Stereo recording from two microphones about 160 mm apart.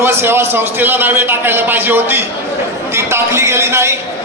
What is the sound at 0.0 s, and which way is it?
A man's voice, 15° right (ahead or behind).